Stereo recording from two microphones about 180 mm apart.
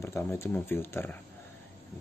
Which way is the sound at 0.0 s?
15° left (ahead or behind).